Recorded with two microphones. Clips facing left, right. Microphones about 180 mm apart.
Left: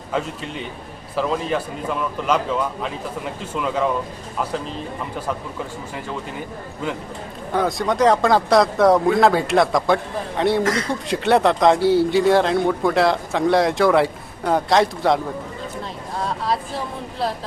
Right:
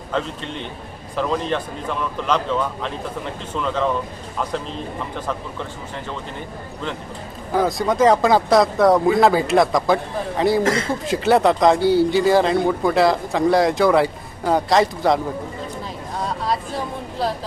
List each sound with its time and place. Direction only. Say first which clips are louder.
0.1 s a man's voice: even; 5° left (ahead or behind)
7.5 s speech: right 1 dB; centre (ahead or behind)
10.6 s speech: right 1 dB; 25° right (ahead or behind)
11.0 s speech: right 1 dB; centre (ahead or behind)